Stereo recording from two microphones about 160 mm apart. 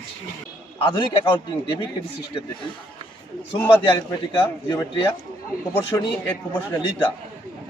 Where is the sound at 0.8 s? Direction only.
30° left (ahead or behind).